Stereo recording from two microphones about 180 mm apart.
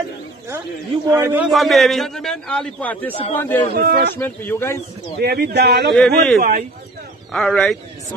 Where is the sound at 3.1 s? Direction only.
35° left (ahead or behind).